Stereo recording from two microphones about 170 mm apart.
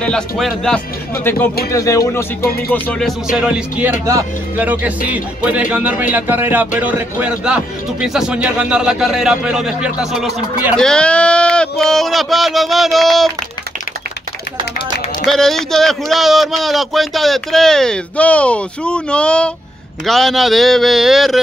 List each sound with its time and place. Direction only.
0.0 s a man's voice: centre (ahead or behind)
1.1 s speech: 15° left (ahead or behind)
2.7 s speech: 5° left (ahead or behind)
3.3 s a man's voice: 5° right (ahead or behind)
4.0 s speech: 20° right (ahead or behind)
4.6 s a man's voice: 10° right (ahead or behind)
15.2 s a man's voice: centre (ahead or behind)